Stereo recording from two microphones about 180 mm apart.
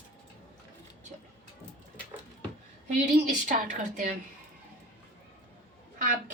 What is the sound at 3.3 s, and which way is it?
Speech, 45° right (ahead or behind).